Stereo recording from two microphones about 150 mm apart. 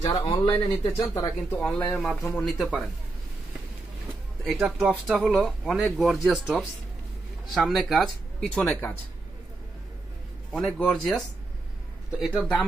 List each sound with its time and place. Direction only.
0.0 s speech: 25° left (ahead or behind)
1.6 s a man's voice: 5° left (ahead or behind)
4.5 s a man's voice: centre (ahead or behind)
10.5 s a man's voice: centre (ahead or behind)